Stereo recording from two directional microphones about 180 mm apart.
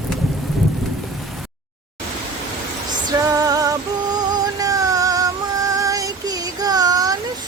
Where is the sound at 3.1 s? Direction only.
20° right (ahead or behind).